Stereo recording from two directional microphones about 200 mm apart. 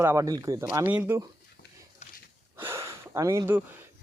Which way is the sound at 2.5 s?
10° right (ahead or behind).